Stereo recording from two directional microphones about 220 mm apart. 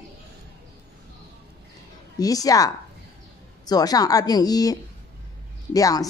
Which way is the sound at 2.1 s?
15° left (ahead or behind).